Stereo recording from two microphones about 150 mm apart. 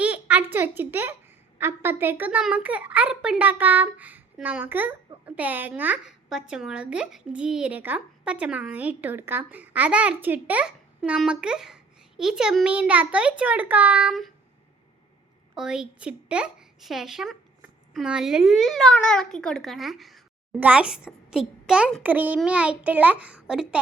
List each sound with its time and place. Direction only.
0.0 s a child's voice: 10° right (ahead or behind)
15.5 s a woman's voice: 5° right (ahead or behind)